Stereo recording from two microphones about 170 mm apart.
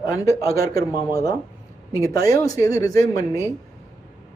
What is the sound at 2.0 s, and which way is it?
Speech, 20° left (ahead or behind).